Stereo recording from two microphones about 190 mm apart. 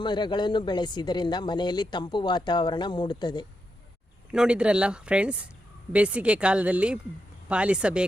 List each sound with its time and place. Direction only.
0.0 s speech: 25° left (ahead or behind)
4.3 s speech: 5° right (ahead or behind)